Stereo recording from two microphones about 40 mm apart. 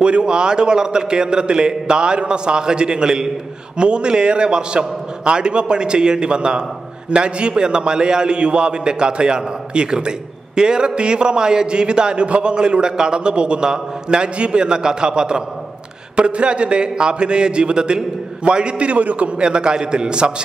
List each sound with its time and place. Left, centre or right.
0.0 s a man's voice: right